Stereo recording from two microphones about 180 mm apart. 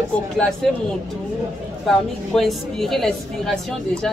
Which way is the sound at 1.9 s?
Centre (ahead or behind).